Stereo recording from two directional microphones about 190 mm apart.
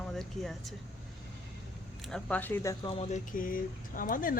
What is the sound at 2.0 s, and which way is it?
Speech, 5° left (ahead or behind).